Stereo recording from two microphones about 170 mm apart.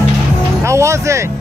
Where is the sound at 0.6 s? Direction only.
15° right (ahead or behind).